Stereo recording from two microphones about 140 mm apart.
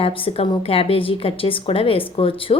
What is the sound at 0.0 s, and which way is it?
A woman's voice, 40° left (ahead or behind).